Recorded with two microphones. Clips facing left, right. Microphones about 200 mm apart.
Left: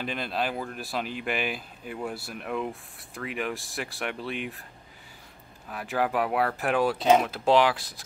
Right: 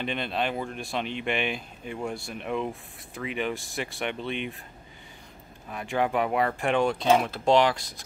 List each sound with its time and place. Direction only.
0.0 s speech: centre (ahead or behind)
5.7 s speech: centre (ahead or behind)